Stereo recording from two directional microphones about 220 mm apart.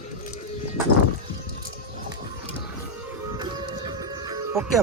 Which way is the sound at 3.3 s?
20° right (ahead or behind).